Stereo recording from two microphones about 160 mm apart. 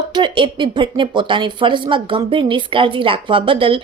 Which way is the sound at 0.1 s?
30° right (ahead or behind).